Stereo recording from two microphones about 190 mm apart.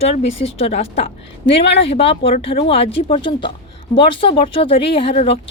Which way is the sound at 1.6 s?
65° left (ahead or behind).